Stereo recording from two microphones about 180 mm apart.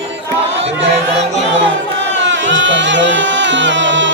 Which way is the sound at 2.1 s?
90° right.